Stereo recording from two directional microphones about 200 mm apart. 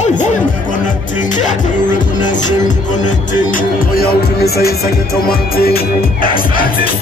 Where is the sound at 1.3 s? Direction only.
40° left (ahead or behind).